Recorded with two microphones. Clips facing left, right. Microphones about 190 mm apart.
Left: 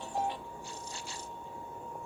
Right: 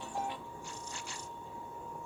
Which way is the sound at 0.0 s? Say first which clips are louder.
Left 4 dB; 35° left (ahead or behind).